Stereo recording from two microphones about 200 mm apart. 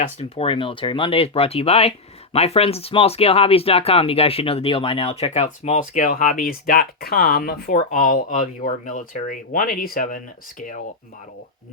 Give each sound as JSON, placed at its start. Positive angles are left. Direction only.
{"t": 0.0, "sound": "speech", "side_deg": 30}